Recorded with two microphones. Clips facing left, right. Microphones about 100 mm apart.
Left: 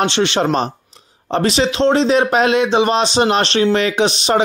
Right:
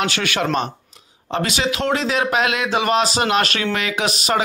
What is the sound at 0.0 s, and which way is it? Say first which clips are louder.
Speech: left 5 dB; 25° left (ahead or behind).